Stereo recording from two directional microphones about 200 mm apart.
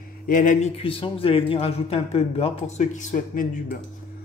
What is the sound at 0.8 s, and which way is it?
Speech, 25° left (ahead or behind).